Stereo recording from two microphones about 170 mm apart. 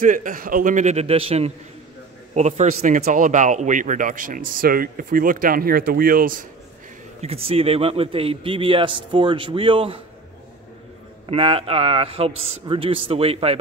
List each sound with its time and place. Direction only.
0.0 s speech: 50° right (ahead or behind)
2.8 s speech: 55° right (ahead or behind)
7.2 s a man's voice: 35° right (ahead or behind)
11.2 s a man's voice: 35° right (ahead or behind)